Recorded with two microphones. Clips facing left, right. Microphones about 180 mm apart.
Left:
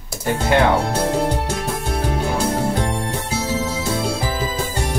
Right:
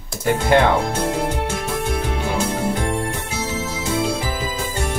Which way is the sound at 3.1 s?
35° left (ahead or behind).